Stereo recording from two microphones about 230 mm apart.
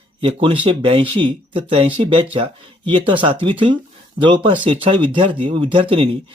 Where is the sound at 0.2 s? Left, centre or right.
Right.